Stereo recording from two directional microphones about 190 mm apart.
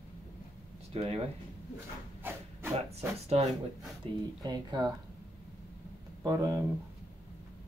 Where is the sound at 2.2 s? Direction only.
10° right (ahead or behind).